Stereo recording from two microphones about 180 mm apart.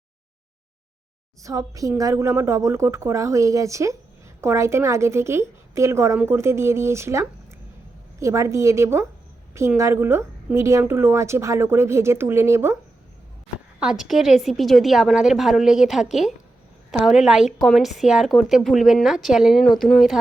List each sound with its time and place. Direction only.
1.4 s a woman's voice: 20° right (ahead or behind)
13.7 s a woman's voice: 5° right (ahead or behind)